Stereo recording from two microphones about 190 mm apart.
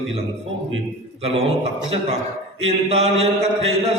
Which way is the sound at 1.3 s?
30° right (ahead or behind).